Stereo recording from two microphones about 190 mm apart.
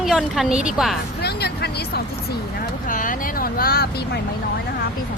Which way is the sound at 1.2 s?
60° left (ahead or behind).